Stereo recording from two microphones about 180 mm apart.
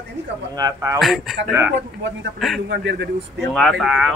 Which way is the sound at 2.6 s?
70° right (ahead or behind).